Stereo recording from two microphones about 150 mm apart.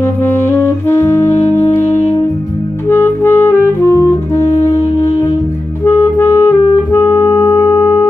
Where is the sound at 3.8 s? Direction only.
20° left (ahead or behind).